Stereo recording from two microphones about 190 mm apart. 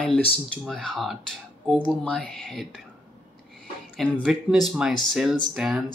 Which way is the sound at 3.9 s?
Centre (ahead or behind).